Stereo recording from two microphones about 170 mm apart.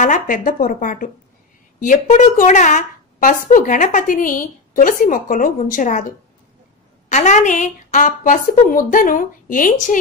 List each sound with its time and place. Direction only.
0.0 s a woman's voice: 50° left (ahead or behind)
7.1 s a woman's voice: 45° left (ahead or behind)